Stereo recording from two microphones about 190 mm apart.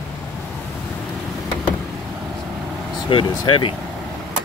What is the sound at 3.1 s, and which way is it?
Speech, 25° left (ahead or behind).